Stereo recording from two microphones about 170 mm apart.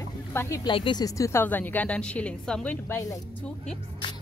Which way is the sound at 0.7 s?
30° left (ahead or behind).